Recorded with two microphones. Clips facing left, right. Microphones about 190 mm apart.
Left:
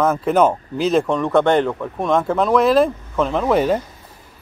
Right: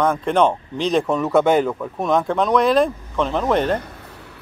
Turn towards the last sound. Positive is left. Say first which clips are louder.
# left 2 dB
turn(degrees=5)  # may be behind; listen again after turning